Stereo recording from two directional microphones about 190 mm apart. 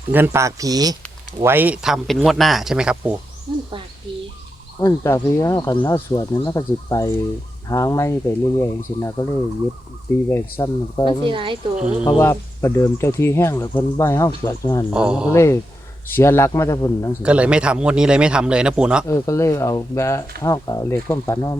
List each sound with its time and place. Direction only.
0.1 s speech: 10° right (ahead or behind)
3.5 s speech: 25° right (ahead or behind)
4.8 s speech: 15° left (ahead or behind)
10.2 s speech: 15° left (ahead or behind)
11.3 s speech: 25° right (ahead or behind)
11.8 s speech: 5° right (ahead or behind)
12.0 s speech: 15° left (ahead or behind)
14.9 s speech: 5° right (ahead or behind)
15.3 s speech: 15° left (ahead or behind)
17.2 s speech: 5° right (ahead or behind)
19.0 s speech: 15° left (ahead or behind)